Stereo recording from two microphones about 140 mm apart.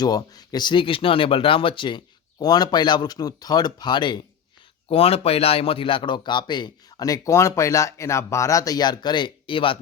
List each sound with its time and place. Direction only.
0.0 s speech: 25° left (ahead or behind)
4.9 s speech: 45° left (ahead or behind)